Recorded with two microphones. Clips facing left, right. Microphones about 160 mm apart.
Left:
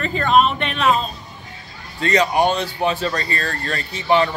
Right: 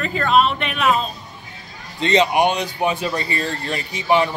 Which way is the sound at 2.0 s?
25° right (ahead or behind).